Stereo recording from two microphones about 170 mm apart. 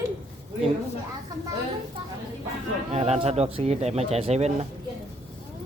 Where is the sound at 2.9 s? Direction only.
40° right (ahead or behind).